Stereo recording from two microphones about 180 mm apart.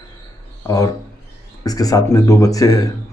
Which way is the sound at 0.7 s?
20° left (ahead or behind).